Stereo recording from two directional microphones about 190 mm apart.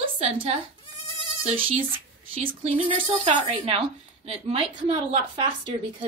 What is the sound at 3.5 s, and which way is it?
A woman's voice, 30° right (ahead or behind).